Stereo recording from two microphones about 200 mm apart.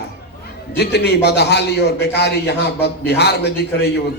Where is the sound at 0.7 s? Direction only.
55° left (ahead or behind).